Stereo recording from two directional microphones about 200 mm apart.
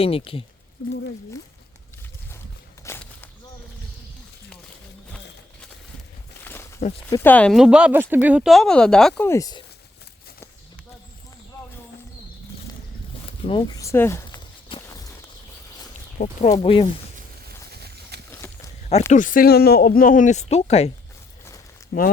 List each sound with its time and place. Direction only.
0.0 s speech: 30° left (ahead or behind)
2.8 s walk: 10° left (ahead or behind)
7.1 s speech: 10° left (ahead or behind)
13.4 s speech: 25° left (ahead or behind)
14.7 s walk: 15° left (ahead or behind)
16.1 s speech: 35° left (ahead or behind)
17.7 s a sound: 50° right (ahead or behind)
18.4 s walk: 10° left (ahead or behind)
19.1 s speech: 40° left (ahead or behind)
21.9 s speech: 55° left (ahead or behind)